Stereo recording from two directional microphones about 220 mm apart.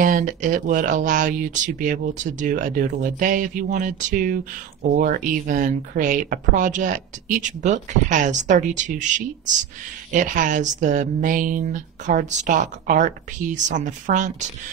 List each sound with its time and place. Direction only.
0.0 s speech: 40° right (ahead or behind)